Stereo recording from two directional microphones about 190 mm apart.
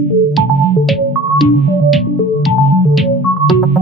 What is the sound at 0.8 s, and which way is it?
Music, centre (ahead or behind).